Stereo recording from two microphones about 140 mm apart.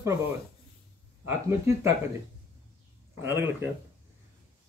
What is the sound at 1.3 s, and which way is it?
Speech, 20° right (ahead or behind).